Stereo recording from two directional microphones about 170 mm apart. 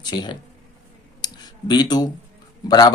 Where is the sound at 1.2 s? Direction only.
25° left (ahead or behind).